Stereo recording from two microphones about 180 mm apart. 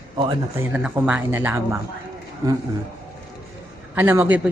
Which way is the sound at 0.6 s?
10° right (ahead or behind).